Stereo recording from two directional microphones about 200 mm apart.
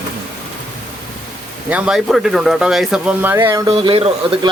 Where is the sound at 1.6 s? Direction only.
5° right (ahead or behind).